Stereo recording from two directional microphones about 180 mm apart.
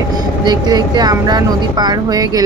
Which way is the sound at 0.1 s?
20° right (ahead or behind).